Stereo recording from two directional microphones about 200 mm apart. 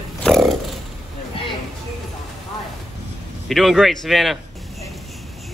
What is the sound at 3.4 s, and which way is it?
Speech, centre (ahead or behind).